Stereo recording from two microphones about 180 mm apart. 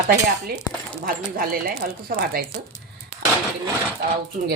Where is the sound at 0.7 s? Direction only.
20° left (ahead or behind).